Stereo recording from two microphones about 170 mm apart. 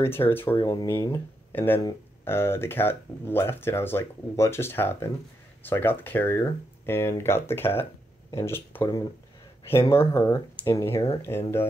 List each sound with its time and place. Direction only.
0.0 s speech: 15° left (ahead or behind)